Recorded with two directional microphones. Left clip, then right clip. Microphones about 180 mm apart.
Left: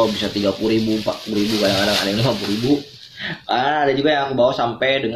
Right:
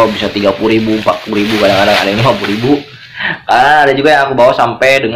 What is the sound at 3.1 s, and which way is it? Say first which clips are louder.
Speech: right 11 dB; 25° left (ahead or behind).